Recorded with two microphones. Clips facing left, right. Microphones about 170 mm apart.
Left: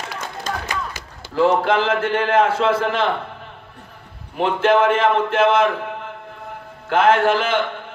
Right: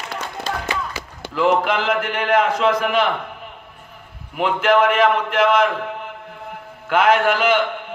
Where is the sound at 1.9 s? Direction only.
15° right (ahead or behind).